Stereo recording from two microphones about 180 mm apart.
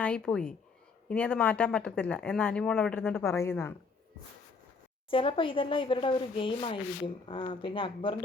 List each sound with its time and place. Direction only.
0.0 s speech: 5° left (ahead or behind)
5.1 s sanding: 30° left (ahead or behind)